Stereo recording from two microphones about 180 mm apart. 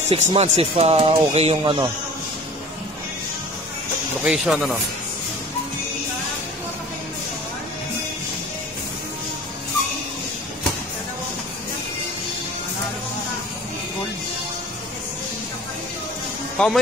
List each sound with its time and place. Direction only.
0.1 s speech: 35° right (ahead or behind)
4.2 s speech: centre (ahead or behind)
16.5 s speech: 5° left (ahead or behind)